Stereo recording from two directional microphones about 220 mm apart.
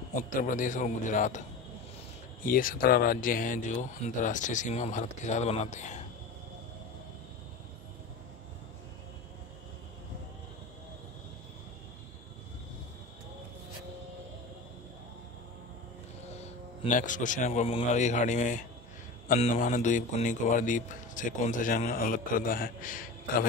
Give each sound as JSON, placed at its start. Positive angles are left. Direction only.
{"t": 0.3, "sound": "a man's voice", "side_deg": 35}
{"t": 2.4, "sound": "a man's voice", "side_deg": 40}
{"t": 16.8, "sound": "a man's voice", "side_deg": 35}